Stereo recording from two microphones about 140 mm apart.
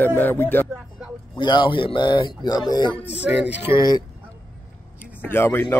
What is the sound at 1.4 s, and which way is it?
Speech, 35° left (ahead or behind).